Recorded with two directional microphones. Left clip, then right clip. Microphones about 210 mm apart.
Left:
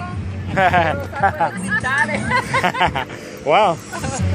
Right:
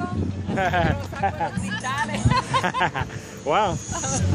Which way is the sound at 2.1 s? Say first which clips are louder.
Left 5 dB; 20° left (ahead or behind).